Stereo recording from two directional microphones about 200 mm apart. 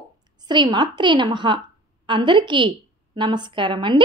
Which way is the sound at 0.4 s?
20° right (ahead or behind).